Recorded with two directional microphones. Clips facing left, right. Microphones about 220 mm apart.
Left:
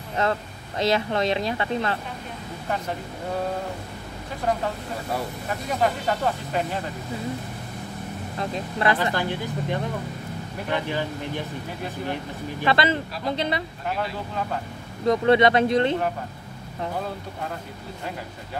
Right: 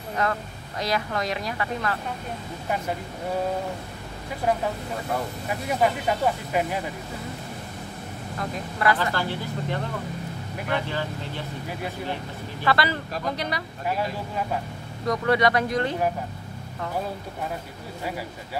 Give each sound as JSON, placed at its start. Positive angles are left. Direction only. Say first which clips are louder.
{"t": 0.2, "sound": "speech", "louder": "left 3 dB", "side_deg": 25}
{"t": 5.5, "sound": "speech", "louder": "right 1 dB", "side_deg": -10}
{"t": 8.4, "sound": "speech", "louder": "left 2 dB", "side_deg": 25}
{"t": 12.6, "sound": "speech", "louder": "left 2 dB", "side_deg": 20}
{"t": 15.0, "sound": "speech", "louder": "left 4 dB", "side_deg": 25}